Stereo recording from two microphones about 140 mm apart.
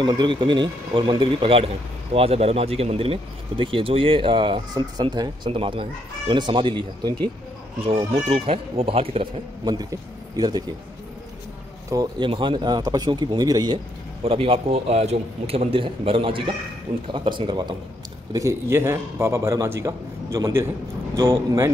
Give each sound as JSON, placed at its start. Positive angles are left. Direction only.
{"t": 0.0, "sound": "speech", "side_deg": -35}
{"t": 7.8, "sound": "a man's voice", "side_deg": -45}
{"t": 9.8, "sound": "speech", "side_deg": -25}
{"t": 11.9, "sound": "a man's voice", "side_deg": -25}
{"t": 14.2, "sound": "a man's voice", "side_deg": -40}
{"t": 18.3, "sound": "a man's voice", "side_deg": -20}